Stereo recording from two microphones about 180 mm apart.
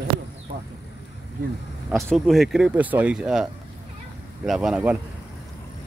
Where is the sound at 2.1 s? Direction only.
Centre (ahead or behind).